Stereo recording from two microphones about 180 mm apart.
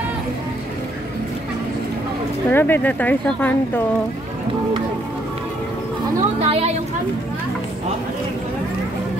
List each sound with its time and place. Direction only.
2.5 s speech: 10° left (ahead or behind)
6.4 s a woman's voice: 35° right (ahead or behind)